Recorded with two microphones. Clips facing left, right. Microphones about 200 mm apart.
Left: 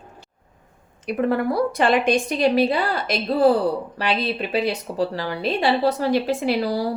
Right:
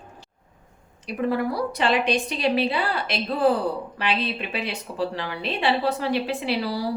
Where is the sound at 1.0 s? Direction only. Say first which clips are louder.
Left 3 dB; 55° left (ahead or behind).